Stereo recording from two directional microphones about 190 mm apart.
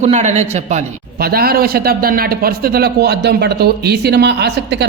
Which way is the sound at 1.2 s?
55° right (ahead or behind).